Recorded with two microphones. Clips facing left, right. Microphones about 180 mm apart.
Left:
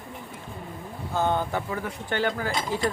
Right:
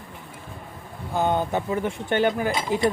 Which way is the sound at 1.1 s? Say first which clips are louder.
Right 3 dB; 15° right (ahead or behind).